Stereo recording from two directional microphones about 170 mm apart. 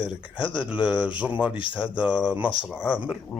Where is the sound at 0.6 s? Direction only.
5° right (ahead or behind).